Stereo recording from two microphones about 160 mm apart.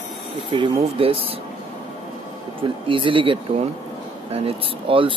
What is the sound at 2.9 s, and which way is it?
Speech, 30° right (ahead or behind).